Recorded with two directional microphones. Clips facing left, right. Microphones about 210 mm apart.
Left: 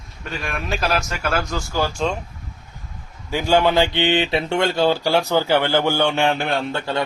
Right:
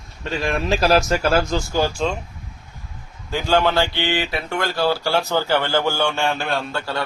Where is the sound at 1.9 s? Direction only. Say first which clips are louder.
Even; centre (ahead or behind).